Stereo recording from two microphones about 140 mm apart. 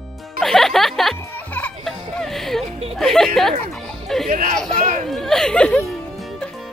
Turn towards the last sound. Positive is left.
turn(degrees=0)  # may be behind; listen again after turning